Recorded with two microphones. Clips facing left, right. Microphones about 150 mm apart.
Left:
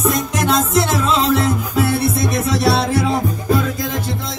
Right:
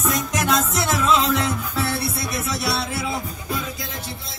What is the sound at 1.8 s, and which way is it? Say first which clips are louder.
Music: left 10 dB; 55° left (ahead or behind).